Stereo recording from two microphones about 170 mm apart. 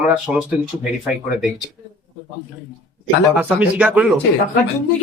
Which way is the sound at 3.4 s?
10° right (ahead or behind).